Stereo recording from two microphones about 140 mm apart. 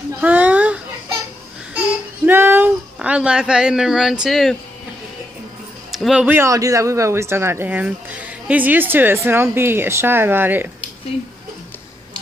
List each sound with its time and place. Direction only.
0.2 s a sound: 10° right (ahead or behind)
2.2 s speech: 15° right (ahead or behind); by 4.6 s centre (ahead or behind)
5.9 s speech: centre (ahead or behind)